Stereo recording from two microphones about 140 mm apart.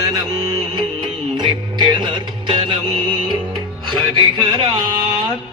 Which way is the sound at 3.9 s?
35° right (ahead or behind).